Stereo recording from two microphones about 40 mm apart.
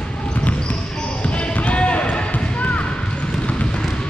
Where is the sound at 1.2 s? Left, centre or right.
Left.